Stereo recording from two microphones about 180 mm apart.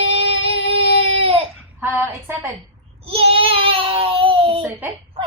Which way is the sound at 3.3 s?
30° right (ahead or behind).